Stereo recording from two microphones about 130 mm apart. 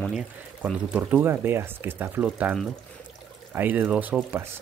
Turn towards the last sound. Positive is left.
turn(degrees=-15)  # may be behind; listen again after turning